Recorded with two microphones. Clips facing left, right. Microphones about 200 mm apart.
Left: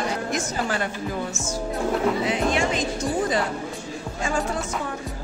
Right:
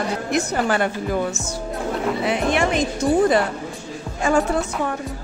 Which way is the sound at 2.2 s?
60° right (ahead or behind).